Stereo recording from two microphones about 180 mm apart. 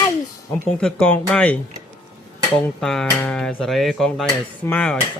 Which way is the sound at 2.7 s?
5° left (ahead or behind).